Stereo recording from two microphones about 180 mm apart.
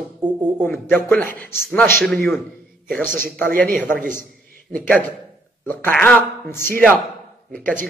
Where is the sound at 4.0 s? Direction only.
50° right (ahead or behind).